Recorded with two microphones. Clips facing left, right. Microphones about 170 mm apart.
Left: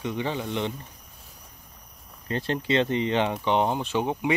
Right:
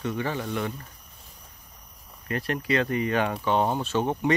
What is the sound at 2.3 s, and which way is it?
Speech, 25° left (ahead or behind).